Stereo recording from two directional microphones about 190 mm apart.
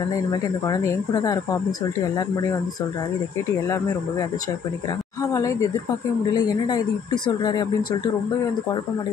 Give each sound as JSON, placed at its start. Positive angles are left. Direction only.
{"t": 0.3, "sound": "speech", "side_deg": 20}
{"t": 3.6, "sound": "speech", "side_deg": 15}
{"t": 5.2, "sound": "a sound", "side_deg": 15}
{"t": 6.3, "sound": "speech", "side_deg": 20}